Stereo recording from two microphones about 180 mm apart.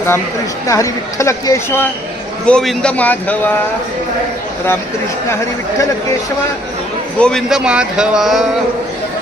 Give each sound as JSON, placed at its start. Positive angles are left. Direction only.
{"t": 0.7, "sound": "speech", "side_deg": 15}
{"t": 7.2, "sound": "speech", "side_deg": 5}